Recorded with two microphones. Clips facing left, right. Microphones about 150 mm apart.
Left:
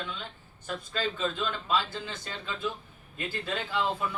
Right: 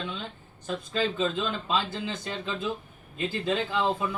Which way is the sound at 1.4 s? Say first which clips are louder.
Right 1 dB; 20° right (ahead or behind).